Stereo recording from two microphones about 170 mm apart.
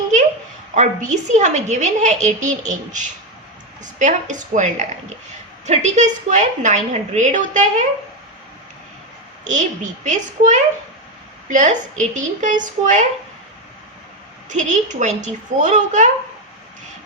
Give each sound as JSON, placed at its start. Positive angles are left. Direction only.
{"t": 0.7, "sound": "a woman's voice", "side_deg": -45}
{"t": 9.5, "sound": "a woman's voice", "side_deg": -45}
{"t": 14.5, "sound": "a woman's voice", "side_deg": -45}